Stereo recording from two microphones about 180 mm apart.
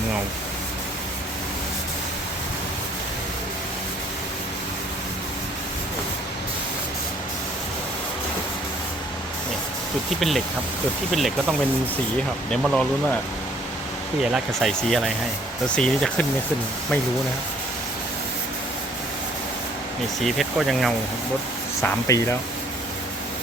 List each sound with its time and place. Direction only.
10.1 s speech: centre (ahead or behind)
14.2 s speech: centre (ahead or behind)
20.2 s speech: centre (ahead or behind)
21.8 s speech: 15° left (ahead or behind)